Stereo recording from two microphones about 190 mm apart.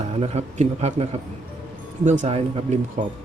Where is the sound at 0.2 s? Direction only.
35° right (ahead or behind).